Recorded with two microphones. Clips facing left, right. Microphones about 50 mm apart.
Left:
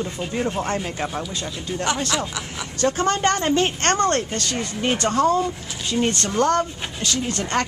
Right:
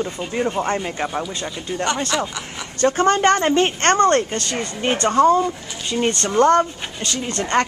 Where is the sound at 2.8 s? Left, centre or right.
Centre.